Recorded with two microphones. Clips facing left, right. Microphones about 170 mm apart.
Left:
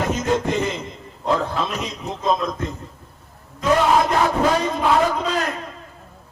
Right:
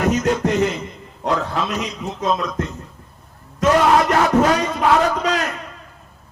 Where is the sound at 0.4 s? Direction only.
75° right (ahead or behind).